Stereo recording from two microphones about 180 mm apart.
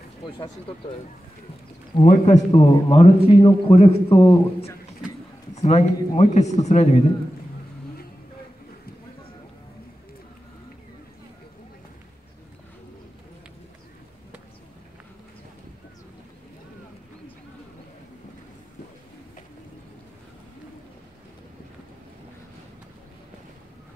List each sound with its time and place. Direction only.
2.0 s a man's voice: 40° left (ahead or behind)
5.5 s a man's voice: 35° left (ahead or behind)